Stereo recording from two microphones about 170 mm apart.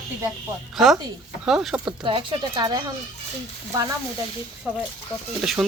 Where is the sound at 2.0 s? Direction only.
30° right (ahead or behind).